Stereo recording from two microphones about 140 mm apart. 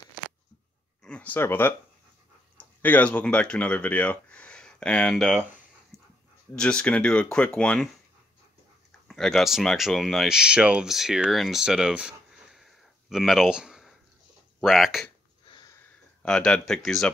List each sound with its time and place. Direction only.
1.0 s speech: 10° left (ahead or behind)
5.9 s dog: 20° right (ahead or behind)
6.5 s speech: 5° left (ahead or behind)
9.0 s speech: centre (ahead or behind)
16.2 s speech: 5° left (ahead or behind)